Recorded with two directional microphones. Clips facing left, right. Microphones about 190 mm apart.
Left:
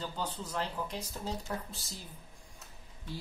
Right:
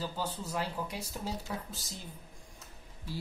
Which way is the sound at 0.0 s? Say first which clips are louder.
Right 1 dB; 10° right (ahead or behind).